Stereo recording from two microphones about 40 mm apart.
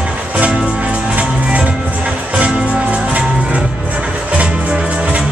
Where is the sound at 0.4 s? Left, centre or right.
Right.